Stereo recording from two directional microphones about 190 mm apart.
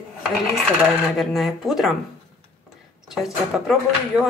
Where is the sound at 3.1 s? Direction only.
Centre (ahead or behind).